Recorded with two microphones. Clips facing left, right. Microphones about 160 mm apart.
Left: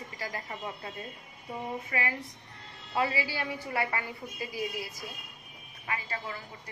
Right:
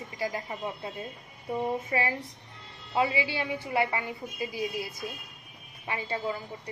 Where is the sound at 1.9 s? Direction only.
30° right (ahead or behind).